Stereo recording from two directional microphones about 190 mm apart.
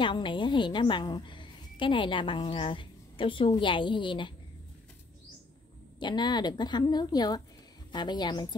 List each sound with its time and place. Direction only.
0.0 s a woman's voice: 25° left (ahead or behind)
5.9 s a woman's voice: 25° left (ahead or behind)